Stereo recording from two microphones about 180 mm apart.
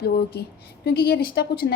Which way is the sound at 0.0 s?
65° left (ahead or behind).